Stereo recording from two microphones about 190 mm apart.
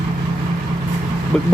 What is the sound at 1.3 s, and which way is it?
Vehicle, 5° left (ahead or behind).